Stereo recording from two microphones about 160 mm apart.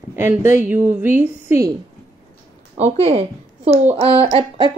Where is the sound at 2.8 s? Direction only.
40° right (ahead or behind).